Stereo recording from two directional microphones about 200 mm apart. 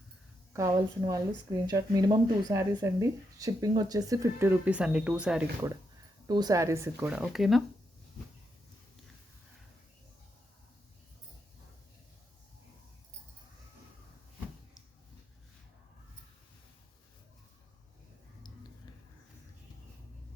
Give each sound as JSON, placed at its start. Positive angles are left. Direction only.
{"t": 0.5, "sound": "a woman's voice", "side_deg": -20}
{"t": 6.2, "sound": "speech", "side_deg": -20}